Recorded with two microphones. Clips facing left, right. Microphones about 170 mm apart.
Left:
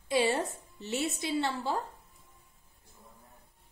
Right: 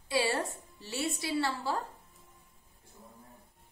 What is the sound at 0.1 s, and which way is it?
A woman's voice, 20° left (ahead or behind).